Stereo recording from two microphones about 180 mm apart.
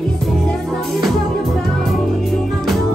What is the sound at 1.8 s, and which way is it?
Music, centre (ahead or behind).